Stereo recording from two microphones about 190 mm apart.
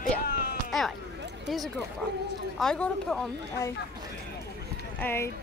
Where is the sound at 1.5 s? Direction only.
Centre (ahead or behind).